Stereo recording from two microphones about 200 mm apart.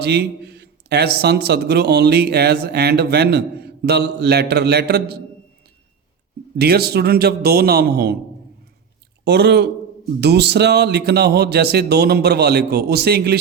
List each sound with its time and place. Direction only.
0.0 s a man's voice: 55° right (ahead or behind)
6.6 s speech: 55° right (ahead or behind)
9.2 s a man's voice: 55° right (ahead or behind)